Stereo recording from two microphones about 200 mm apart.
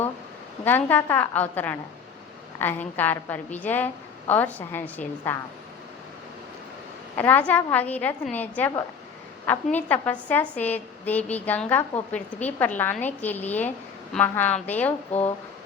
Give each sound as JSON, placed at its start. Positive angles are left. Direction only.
{"t": 0.6, "sound": "a woman's voice", "side_deg": 10}
{"t": 7.2, "sound": "a woman's voice", "side_deg": 10}